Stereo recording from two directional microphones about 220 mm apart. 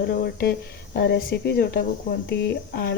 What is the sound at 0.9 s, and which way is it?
Speech, 45° left (ahead or behind).